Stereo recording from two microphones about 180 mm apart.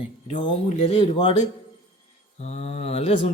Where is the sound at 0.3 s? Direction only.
30° left (ahead or behind).